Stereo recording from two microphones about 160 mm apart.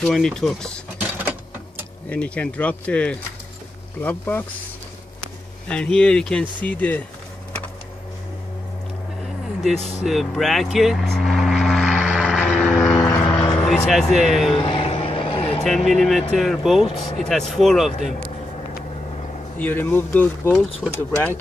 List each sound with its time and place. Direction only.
0.0 s speech: 5° left (ahead or behind)
0.9 s printer: 10° right (ahead or behind)
2.0 s speech: 5° left (ahead or behind)
5.7 s speech: 5° left (ahead or behind)
9.8 s speech: 45° left (ahead or behind)
10.0 s vehicle: centre (ahead or behind)
12.6 s vehicle: 10° left (ahead or behind); by 13.4 s 25° left (ahead or behind)
13.6 s speech: centre (ahead or behind)
14.5 s vehicle: 35° left (ahead or behind)
15.6 s speech: centre (ahead or behind)
19.6 s speech: 10° left (ahead or behind)